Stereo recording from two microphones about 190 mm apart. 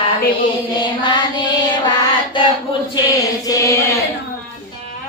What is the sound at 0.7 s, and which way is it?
Music, 25° left (ahead or behind).